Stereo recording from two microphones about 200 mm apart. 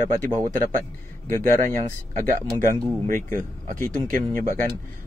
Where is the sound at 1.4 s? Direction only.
40° right (ahead or behind).